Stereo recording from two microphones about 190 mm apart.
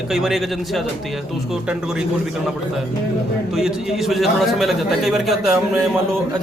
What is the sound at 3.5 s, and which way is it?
A man's voice, centre (ahead or behind).